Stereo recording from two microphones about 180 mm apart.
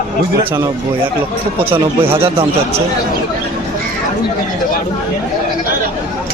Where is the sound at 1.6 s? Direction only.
10° right (ahead or behind).